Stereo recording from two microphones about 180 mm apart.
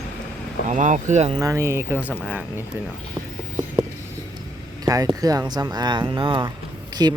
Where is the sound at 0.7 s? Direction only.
45° right (ahead or behind).